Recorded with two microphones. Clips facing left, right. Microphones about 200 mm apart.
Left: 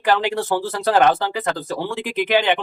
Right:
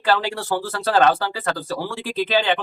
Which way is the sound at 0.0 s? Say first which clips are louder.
Left 2 dB; 15° left (ahead or behind).